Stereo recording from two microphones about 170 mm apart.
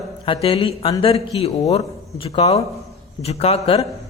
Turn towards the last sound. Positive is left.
turn(degrees=35)  # may be behind; listen again after turning